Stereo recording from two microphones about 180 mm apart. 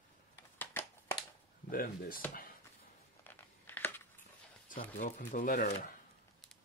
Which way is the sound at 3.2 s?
10° left (ahead or behind).